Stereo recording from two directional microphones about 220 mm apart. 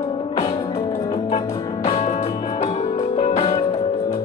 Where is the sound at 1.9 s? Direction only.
30° left (ahead or behind).